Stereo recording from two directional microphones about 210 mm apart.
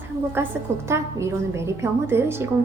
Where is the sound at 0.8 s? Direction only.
15° right (ahead or behind).